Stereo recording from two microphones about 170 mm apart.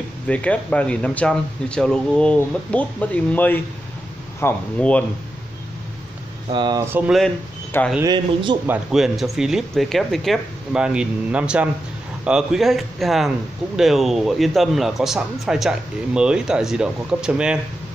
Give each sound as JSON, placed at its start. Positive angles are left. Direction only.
{"t": 0.3, "sound": "speech", "side_deg": 5}
{"t": 6.5, "sound": "speech", "side_deg": -25}
{"t": 6.9, "sound": "speech", "side_deg": -10}
{"t": 8.0, "sound": "speech", "side_deg": -25}
{"t": 8.6, "sound": "a man's voice", "side_deg": 0}